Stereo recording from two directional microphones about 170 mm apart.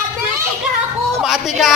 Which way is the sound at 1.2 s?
Centre (ahead or behind).